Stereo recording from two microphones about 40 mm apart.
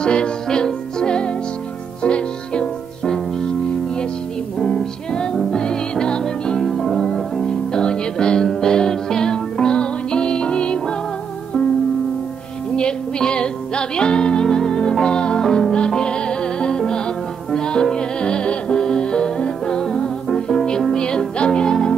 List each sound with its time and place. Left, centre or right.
0.0 s music: left
4.6 s music: centre
5.1 s music: left
12.7 s music: left